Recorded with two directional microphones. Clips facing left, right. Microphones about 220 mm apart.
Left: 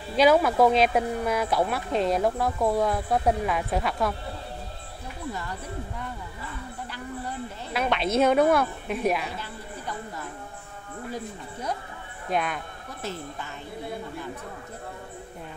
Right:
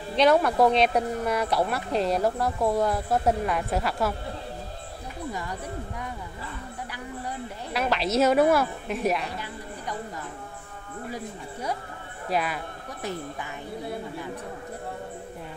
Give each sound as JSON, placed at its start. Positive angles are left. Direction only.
{"t": 0.1, "sound": "speech", "side_deg": 5}
{"t": 5.3, "sound": "speech", "side_deg": -15}
{"t": 7.7, "sound": "speech", "side_deg": 0}
{"t": 12.3, "sound": "speech", "side_deg": -5}
{"t": 13.0, "sound": "speech", "side_deg": -15}